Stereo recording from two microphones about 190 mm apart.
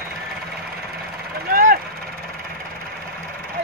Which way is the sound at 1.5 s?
45° right (ahead or behind).